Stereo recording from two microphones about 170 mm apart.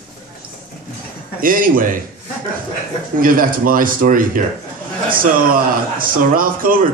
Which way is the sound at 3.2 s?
55° right (ahead or behind).